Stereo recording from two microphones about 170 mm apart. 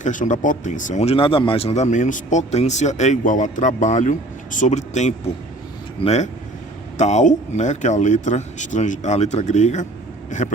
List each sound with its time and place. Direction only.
0.0 s speech: 45° left (ahead or behind)
6.9 s speech: 45° left (ahead or behind)